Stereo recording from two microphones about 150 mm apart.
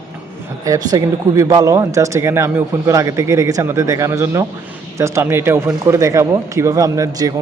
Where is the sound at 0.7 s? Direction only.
25° right (ahead or behind).